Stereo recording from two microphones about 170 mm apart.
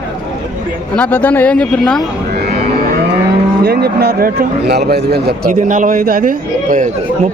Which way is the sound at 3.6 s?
70° right (ahead or behind).